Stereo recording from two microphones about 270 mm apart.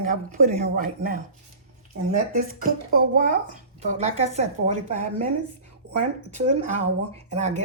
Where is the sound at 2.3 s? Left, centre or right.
Right.